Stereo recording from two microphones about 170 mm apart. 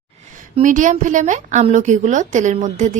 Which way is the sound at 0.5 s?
45° right (ahead or behind).